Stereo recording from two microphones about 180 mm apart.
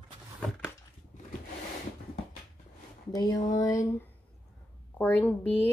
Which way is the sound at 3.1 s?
20° left (ahead or behind).